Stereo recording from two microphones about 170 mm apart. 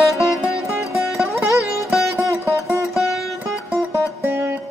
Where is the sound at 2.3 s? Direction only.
15° right (ahead or behind).